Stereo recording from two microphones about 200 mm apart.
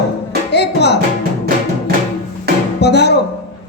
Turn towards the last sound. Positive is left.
turn(degrees=55)  # may be behind; listen again after turning